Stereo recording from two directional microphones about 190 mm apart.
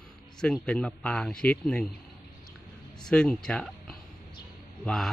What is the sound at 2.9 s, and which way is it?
Speech, 5° left (ahead or behind).